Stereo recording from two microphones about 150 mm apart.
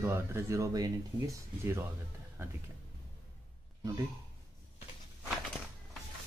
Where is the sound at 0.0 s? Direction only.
15° right (ahead or behind).